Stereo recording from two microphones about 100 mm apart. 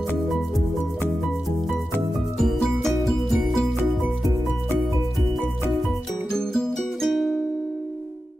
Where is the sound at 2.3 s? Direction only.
Centre (ahead or behind).